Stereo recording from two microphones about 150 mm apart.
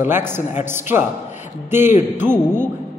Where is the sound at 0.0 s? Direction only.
15° right (ahead or behind).